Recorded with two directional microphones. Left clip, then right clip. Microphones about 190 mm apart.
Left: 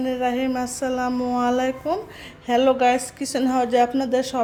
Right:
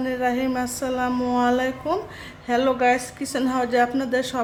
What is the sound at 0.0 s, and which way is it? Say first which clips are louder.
A woman's voice: even; 15° left (ahead or behind).